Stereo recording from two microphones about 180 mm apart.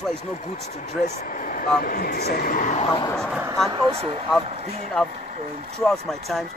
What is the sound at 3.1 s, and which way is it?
Speech, 5° left (ahead or behind).